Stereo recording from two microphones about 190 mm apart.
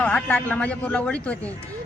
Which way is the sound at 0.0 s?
10° left (ahead or behind).